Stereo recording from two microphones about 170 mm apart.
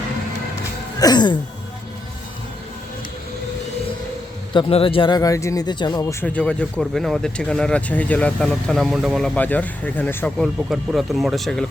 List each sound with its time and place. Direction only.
0.9 s a sound: 25° left (ahead or behind)
4.5 s speech: 30° left (ahead or behind); by 10.3 s 10° left (ahead or behind)
10.3 s speech: centre (ahead or behind)